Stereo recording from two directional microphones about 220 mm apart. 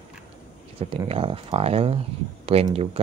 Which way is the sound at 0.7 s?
25° right (ahead or behind).